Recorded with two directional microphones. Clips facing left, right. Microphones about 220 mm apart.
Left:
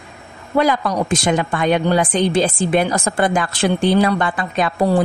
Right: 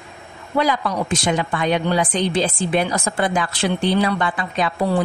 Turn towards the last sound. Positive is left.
turn(degrees=50)  # may be behind; listen again after turning